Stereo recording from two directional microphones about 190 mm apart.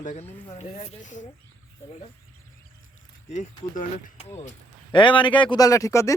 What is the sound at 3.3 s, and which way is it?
Speech, 40° left (ahead or behind).